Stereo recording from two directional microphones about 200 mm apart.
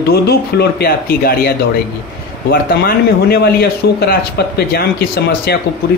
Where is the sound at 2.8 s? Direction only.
50° left (ahead or behind).